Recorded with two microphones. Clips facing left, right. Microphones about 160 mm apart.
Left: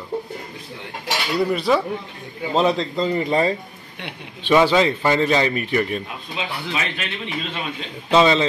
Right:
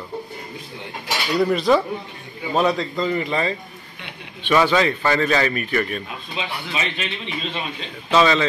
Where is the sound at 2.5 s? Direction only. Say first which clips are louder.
Left 1 dB; 25° left (ahead or behind).